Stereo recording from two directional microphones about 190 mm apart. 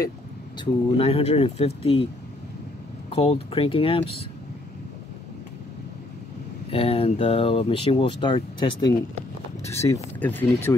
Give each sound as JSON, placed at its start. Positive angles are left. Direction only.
{"t": 0.6, "sound": "speech", "side_deg": 30}
{"t": 3.2, "sound": "speech", "side_deg": 30}
{"t": 6.7, "sound": "speech", "side_deg": 30}
{"t": 9.7, "sound": "speech", "side_deg": 15}